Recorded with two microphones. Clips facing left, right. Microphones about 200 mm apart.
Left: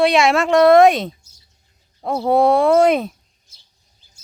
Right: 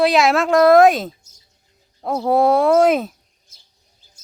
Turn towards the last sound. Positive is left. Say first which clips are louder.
# even
turn(degrees=0)  # may be behind; listen again after turning